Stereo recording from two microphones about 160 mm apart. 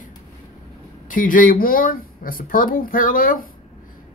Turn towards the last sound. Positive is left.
turn(degrees=60)  # may be behind; listen again after turning